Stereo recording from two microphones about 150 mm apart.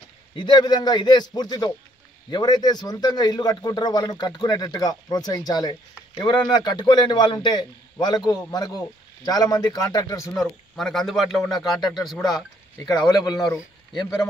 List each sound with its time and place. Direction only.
0.4 s speech: 30° left (ahead or behind)
10.3 s a man's voice: 5° left (ahead or behind)
12.7 s speech: 20° left (ahead or behind)